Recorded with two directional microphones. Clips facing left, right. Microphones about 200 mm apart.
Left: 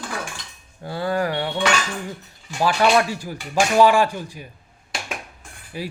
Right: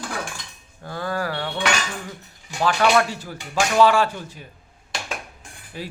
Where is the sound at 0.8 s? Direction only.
15° left (ahead or behind).